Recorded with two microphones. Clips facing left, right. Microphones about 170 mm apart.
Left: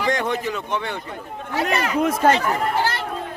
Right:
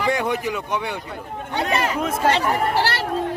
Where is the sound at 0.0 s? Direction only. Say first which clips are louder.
Right 1 dB; 10° right (ahead or behind).